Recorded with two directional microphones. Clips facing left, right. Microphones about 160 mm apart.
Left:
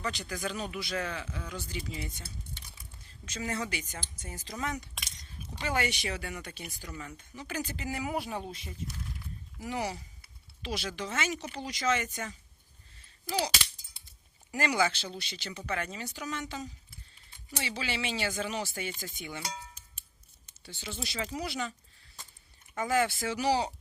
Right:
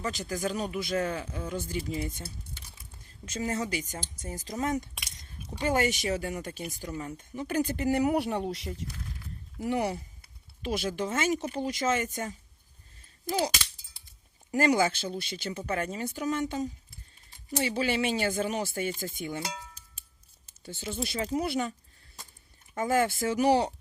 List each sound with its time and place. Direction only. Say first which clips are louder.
0.0 s speech: right 4 dB; 40° right (ahead or behind); by 8.7 s 80° right
9.6 s speech: right 6 dB; 55° right (ahead or behind)
14.5 s speech: right 5 dB; 45° right (ahead or behind)
20.7 s speech: right 6 dB; 50° right (ahead or behind)